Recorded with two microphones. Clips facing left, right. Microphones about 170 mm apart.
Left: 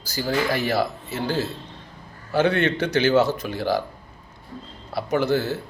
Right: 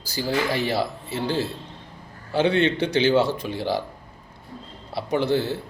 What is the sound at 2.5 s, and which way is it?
Speech, 20° right (ahead or behind).